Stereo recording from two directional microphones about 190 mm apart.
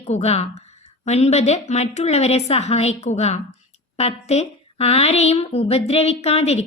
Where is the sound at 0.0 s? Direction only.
35° left (ahead or behind).